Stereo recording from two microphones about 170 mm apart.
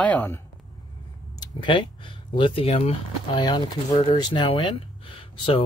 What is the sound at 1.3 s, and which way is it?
Speech, 25° left (ahead or behind).